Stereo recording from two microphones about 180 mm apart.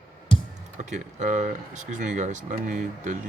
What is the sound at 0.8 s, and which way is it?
Speech, 40° right (ahead or behind).